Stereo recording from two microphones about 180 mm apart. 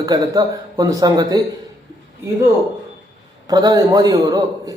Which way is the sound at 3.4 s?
20° right (ahead or behind).